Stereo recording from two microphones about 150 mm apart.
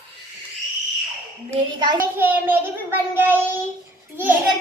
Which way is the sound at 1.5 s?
30° right (ahead or behind).